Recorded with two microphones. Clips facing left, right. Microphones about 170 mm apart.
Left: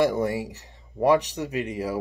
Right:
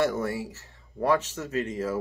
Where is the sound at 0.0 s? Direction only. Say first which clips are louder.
Left 4 dB; 15° left (ahead or behind).